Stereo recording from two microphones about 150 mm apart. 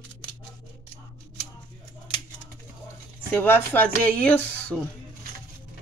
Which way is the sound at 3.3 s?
10° left (ahead or behind).